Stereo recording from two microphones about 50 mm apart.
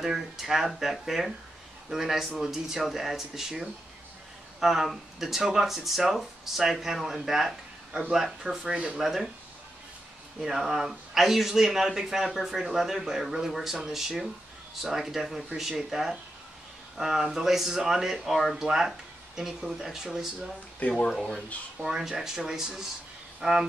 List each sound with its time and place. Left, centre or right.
0.0 s speech: centre
8.7 s speech: right
9.0 s speech: centre
10.4 s speech: centre
20.9 s speech: centre
21.8 s speech: centre